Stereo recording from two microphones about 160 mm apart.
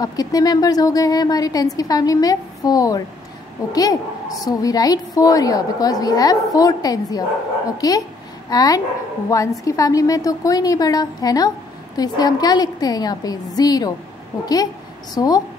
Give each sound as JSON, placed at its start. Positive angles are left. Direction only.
{"t": 0.0, "sound": "a woman's voice", "side_deg": 25}